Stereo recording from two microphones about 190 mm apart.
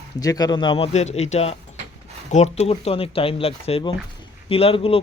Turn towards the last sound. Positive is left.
turn(degrees=30)  # may be behind; listen again after turning